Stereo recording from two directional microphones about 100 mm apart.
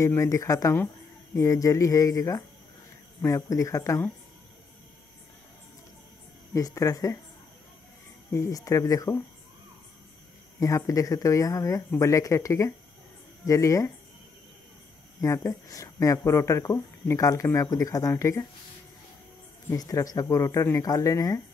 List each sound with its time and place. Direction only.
0.0 s speech: 30° left (ahead or behind)
6.5 s speech: 35° left (ahead or behind)
8.3 s speech: 35° left (ahead or behind)
10.6 s speech: 35° left (ahead or behind)
15.1 s speech: 30° left (ahead or behind)
19.7 s speech: 35° left (ahead or behind)